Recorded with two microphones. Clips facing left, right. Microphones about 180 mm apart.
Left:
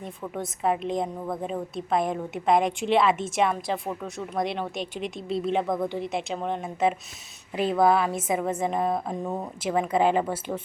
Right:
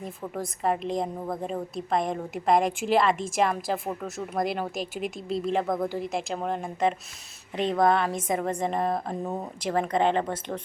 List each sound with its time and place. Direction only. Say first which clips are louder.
0.0 s a woman's voice: even; centre (ahead or behind)